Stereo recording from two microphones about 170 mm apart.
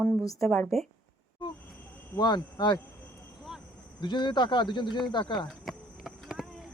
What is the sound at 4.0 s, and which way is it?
Speech, 25° left (ahead or behind).